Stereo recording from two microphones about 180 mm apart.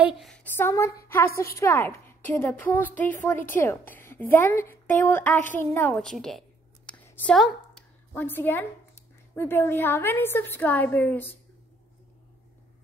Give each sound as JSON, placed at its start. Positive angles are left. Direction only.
{"t": 0.0, "sound": "a woman's voice", "side_deg": 0}
{"t": 6.9, "sound": "a sound", "side_deg": 5}
{"t": 8.1, "sound": "a woman's voice", "side_deg": 10}